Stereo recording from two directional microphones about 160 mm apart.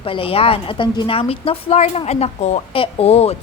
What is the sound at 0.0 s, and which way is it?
A woman's voice, 35° left (ahead or behind).